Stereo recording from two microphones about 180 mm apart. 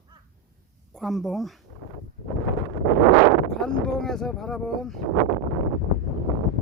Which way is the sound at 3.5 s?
5° left (ahead or behind).